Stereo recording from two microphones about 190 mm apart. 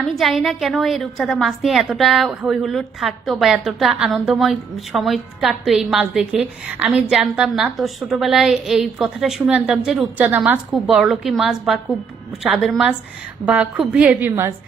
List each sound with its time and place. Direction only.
0.0 s a woman's voice: centre (ahead or behind)